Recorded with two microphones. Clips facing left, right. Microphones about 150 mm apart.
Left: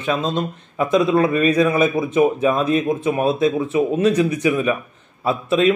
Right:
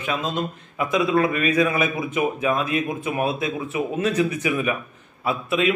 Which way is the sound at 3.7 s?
20° left (ahead or behind).